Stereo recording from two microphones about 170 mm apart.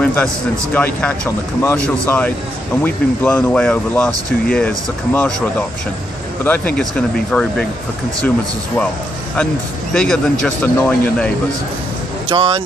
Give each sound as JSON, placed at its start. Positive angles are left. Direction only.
{"t": 0.0, "sound": "a man's voice", "side_deg": 5}
{"t": 6.4, "sound": "speech", "side_deg": 10}
{"t": 9.9, "sound": "speech", "side_deg": 5}
{"t": 12.3, "sound": "speech", "side_deg": -30}